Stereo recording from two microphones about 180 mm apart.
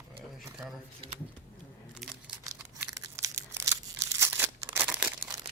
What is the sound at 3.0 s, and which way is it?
Crumpling, 15° right (ahead or behind).